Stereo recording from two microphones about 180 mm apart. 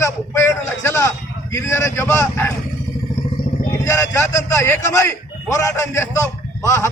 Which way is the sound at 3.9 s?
15° left (ahead or behind).